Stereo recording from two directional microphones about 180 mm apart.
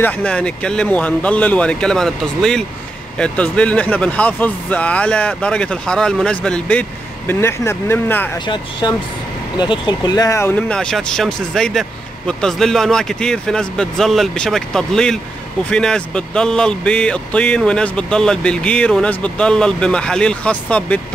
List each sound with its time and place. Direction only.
0.0 s speech: 5° left (ahead or behind)